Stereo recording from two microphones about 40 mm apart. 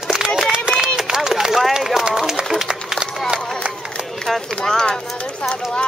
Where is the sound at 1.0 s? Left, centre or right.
Centre.